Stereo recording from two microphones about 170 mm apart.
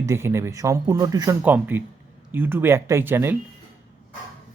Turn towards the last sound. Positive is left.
turn(degrees=-10)  # may be behind; listen again after turning